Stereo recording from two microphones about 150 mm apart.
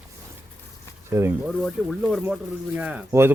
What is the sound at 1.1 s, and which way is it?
Speech, 15° right (ahead or behind).